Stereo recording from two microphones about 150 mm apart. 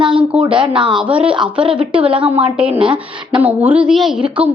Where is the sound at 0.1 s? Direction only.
5° right (ahead or behind).